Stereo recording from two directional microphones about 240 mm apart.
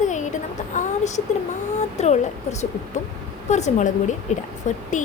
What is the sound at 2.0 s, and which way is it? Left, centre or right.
Speech, left.